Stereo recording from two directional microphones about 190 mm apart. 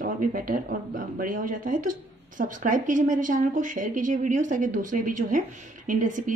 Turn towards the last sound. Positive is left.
turn(degrees=-45)  # may be behind; listen again after turning